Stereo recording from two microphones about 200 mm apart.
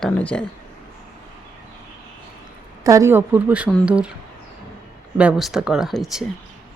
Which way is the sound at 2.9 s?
15° right (ahead or behind).